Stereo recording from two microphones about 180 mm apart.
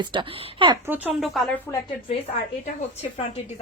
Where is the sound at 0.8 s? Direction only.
10° right (ahead or behind).